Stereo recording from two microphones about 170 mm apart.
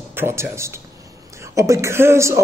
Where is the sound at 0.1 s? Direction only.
15° right (ahead or behind).